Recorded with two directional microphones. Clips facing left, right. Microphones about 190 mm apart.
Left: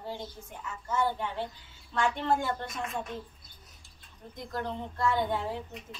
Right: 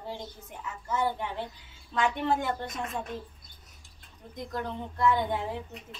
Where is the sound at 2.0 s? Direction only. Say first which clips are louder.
Right 1 dB; 20° right (ahead or behind).